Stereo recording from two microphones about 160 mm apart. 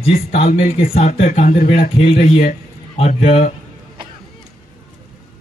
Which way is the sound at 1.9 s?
40° left (ahead or behind).